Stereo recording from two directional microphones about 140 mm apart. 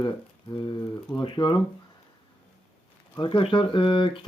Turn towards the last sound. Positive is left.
turn(degrees=35)  # may be behind; listen again after turning